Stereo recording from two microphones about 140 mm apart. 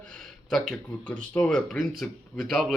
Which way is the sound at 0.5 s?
5° left (ahead or behind).